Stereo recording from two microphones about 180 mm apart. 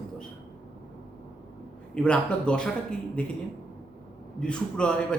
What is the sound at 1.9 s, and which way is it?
A man's voice, 5° left (ahead or behind).